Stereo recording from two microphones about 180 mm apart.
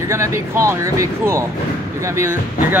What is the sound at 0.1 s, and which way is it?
Speech, 15° right (ahead or behind).